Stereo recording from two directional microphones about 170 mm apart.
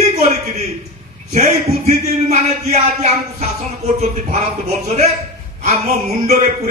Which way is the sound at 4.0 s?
40° right (ahead or behind).